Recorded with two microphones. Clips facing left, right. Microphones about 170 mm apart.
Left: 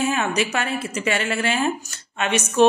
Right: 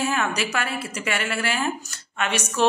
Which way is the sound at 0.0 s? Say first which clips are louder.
Left 3 dB; 20° left (ahead or behind).